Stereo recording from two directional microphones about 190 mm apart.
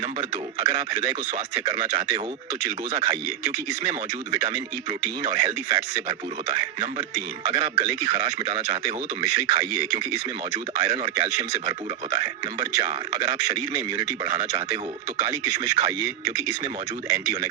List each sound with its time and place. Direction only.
0.6 s a man's voice: 20° right (ahead or behind)